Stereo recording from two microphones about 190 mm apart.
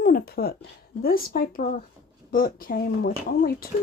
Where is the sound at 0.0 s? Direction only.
50° left (ahead or behind).